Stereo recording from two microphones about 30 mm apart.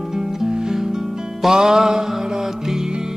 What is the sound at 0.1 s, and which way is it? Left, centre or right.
Music, centre.